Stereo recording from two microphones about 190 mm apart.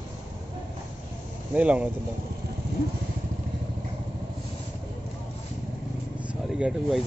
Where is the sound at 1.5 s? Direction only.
5° right (ahead or behind).